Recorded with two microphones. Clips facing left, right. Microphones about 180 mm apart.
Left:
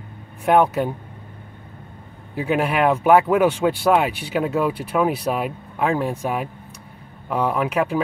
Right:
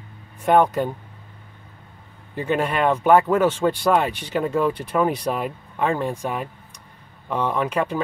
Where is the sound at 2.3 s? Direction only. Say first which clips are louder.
Left 2 dB; 10° left (ahead or behind).